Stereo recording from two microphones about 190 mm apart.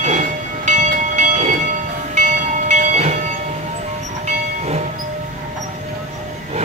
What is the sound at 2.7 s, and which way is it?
Train, 35° right (ahead or behind).